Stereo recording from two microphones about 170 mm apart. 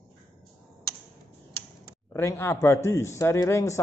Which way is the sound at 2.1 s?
15° left (ahead or behind).